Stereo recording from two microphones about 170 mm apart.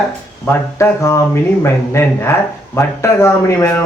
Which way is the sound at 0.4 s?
15° left (ahead or behind).